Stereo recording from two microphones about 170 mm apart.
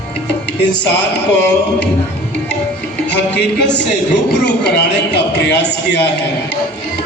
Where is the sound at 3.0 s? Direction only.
90° left.